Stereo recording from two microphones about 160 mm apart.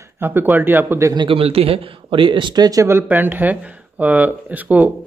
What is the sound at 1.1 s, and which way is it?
Speech, 30° right (ahead or behind).